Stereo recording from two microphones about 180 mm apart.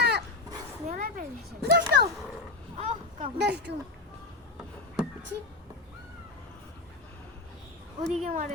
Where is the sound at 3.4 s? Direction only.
70° right (ahead or behind).